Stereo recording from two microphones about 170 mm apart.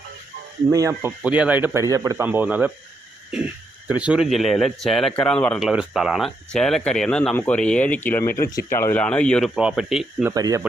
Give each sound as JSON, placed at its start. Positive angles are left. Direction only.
{"t": 0.7, "sound": "a man's voice", "side_deg": -20}
{"t": 10.2, "sound": "speech", "side_deg": -20}